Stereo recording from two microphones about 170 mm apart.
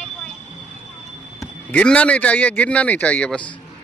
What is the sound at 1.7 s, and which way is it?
Speech, 5° left (ahead or behind).